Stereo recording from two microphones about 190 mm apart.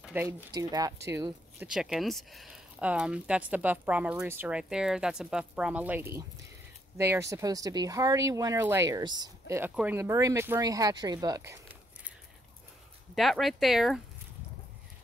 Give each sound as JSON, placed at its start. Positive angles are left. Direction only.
{"t": 0.0, "sound": "speech", "side_deg": -10}
{"t": 1.7, "sound": "speech", "side_deg": -5}
{"t": 13.1, "sound": "speech", "side_deg": 0}